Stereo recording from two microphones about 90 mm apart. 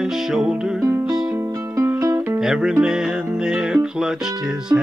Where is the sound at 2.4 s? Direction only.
5° right (ahead or behind).